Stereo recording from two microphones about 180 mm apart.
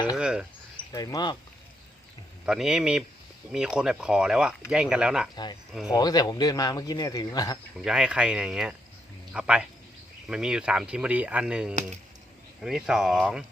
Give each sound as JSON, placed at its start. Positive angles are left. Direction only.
{"t": 0.2, "sound": "speech", "side_deg": -5}
{"t": 0.9, "sound": "speech", "side_deg": 20}
{"t": 2.5, "sound": "speech", "side_deg": -5}
{"t": 5.9, "sound": "speech", "side_deg": 20}
{"t": 7.9, "sound": "speech", "side_deg": -5}